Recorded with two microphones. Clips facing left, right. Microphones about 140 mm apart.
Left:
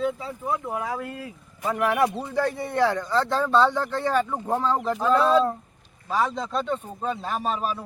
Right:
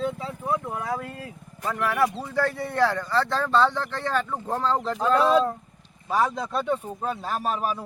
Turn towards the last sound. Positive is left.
turn(degrees=0)  # may be behind; listen again after turning